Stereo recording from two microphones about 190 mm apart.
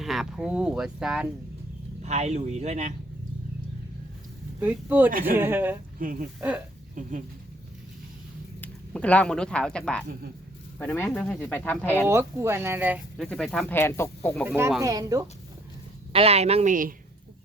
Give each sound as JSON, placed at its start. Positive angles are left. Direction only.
{"t": 0.0, "sound": "speech", "side_deg": 0}
{"t": 2.0, "sound": "speech", "side_deg": -35}
{"t": 4.6, "sound": "speech", "side_deg": -10}
{"t": 5.1, "sound": "speech", "side_deg": -50}
{"t": 5.4, "sound": "speech", "side_deg": -10}
{"t": 6.0, "sound": "speech", "side_deg": -45}
{"t": 8.6, "sound": "speech", "side_deg": 5}
{"t": 12.0, "sound": "speech", "side_deg": -15}
{"t": 13.1, "sound": "speech", "side_deg": 5}
{"t": 14.4, "sound": "speech", "side_deg": -10}
{"t": 16.1, "sound": "speech", "side_deg": -30}